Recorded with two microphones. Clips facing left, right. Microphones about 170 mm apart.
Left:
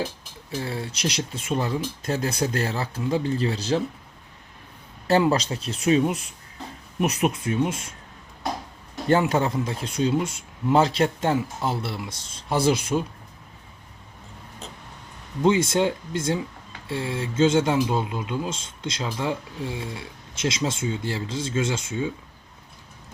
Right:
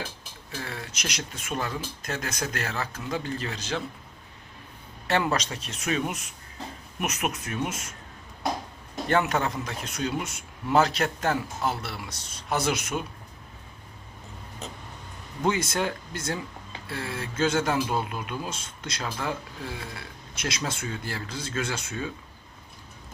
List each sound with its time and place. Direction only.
0.5 s speech: 30° left (ahead or behind)
5.0 s a man's voice: 30° left (ahead or behind)
9.0 s a man's voice: 30° left (ahead or behind)
15.4 s a man's voice: 25° left (ahead or behind)